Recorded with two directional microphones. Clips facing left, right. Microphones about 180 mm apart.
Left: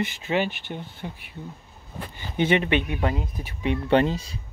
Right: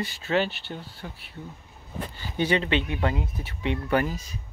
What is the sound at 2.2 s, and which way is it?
Speech, 20° left (ahead or behind).